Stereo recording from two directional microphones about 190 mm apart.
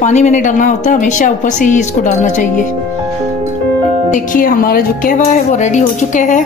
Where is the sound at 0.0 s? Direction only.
40° left (ahead or behind).